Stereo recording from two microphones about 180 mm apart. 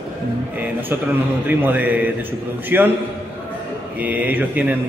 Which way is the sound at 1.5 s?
10° right (ahead or behind).